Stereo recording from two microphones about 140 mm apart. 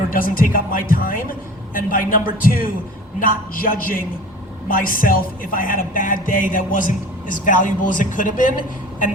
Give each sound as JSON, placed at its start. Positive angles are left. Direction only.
{"t": 0.1, "sound": "a man's voice", "side_deg": 85}